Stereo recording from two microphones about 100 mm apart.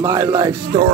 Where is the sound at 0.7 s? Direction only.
60° right (ahead or behind).